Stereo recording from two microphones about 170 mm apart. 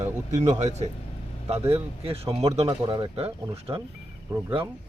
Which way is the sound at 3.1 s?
35° right (ahead or behind).